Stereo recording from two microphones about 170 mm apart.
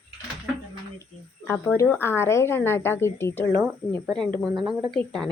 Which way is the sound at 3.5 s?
15° right (ahead or behind).